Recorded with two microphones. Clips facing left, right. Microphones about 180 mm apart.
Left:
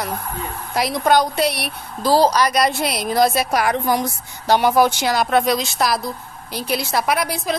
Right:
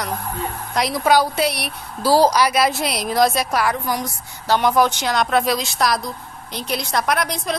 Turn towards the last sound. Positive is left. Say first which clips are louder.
# left 1 dB
turn(degrees=5)  # may be behind; listen again after turning